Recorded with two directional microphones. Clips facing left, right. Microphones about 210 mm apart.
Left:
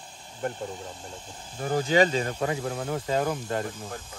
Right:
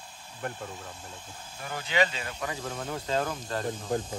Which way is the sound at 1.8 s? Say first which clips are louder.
Left 6 dB; 45° left (ahead or behind).